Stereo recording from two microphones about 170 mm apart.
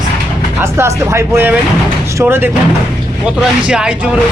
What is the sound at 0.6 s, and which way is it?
Speech, 15° right (ahead or behind).